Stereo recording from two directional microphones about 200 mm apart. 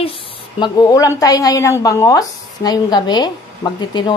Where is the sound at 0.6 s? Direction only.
15° left (ahead or behind).